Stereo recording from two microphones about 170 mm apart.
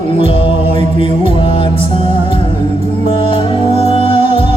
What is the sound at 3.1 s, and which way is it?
Music, 35° left (ahead or behind).